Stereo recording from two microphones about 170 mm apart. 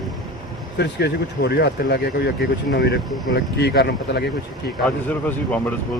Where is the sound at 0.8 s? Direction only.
75° left (ahead or behind).